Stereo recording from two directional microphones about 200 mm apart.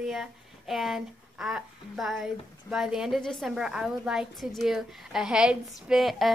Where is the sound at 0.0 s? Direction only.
Centre (ahead or behind).